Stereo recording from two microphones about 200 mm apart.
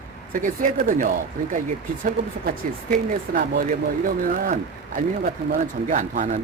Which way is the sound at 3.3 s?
50° right (ahead or behind).